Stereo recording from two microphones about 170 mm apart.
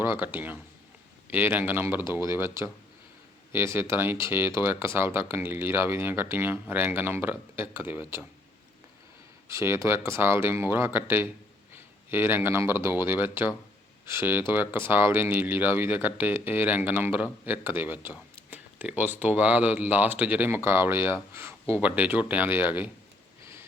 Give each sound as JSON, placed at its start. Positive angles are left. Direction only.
{"t": 0.0, "sound": "speech", "side_deg": -15}
{"t": 9.5, "sound": "speech", "side_deg": -15}